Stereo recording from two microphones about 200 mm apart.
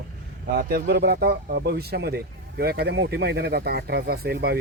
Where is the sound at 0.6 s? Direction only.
50° right (ahead or behind).